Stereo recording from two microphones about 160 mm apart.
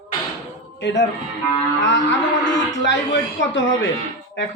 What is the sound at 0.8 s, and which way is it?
Speech, 90° left.